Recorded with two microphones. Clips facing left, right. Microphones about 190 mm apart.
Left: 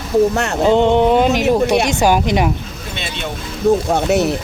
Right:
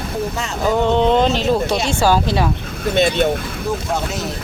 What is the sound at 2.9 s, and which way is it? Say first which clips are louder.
Speech: right 14 dB; 45° right (ahead or behind).